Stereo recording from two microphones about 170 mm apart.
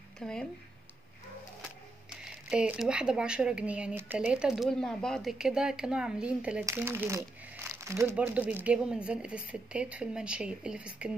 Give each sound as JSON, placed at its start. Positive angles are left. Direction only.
{"t": 0.2, "sound": "speech", "side_deg": 5}
{"t": 2.2, "sound": "speech", "side_deg": -5}